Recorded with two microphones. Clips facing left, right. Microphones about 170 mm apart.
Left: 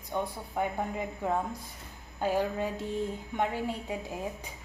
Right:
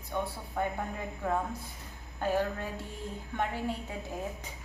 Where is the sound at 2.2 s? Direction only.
15° left (ahead or behind).